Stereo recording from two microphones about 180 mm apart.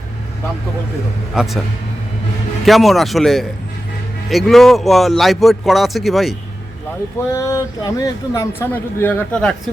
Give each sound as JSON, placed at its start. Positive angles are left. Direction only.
{"t": 1.4, "sound": "a man's voice", "side_deg": 0}
{"t": 2.6, "sound": "a man's voice", "side_deg": 0}
{"t": 7.3, "sound": "speech", "side_deg": 15}